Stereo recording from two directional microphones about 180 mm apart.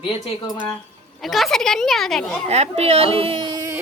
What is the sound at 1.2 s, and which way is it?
Speech, centre (ahead or behind).